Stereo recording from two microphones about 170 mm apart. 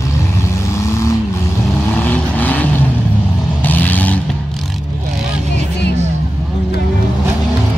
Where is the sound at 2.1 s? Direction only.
10° left (ahead or behind).